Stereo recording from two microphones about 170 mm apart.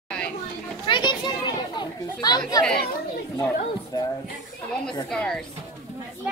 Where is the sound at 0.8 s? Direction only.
25° left (ahead or behind).